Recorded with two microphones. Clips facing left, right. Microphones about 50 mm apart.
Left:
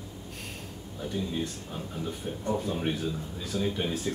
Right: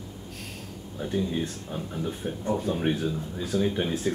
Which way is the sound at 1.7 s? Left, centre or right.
Centre.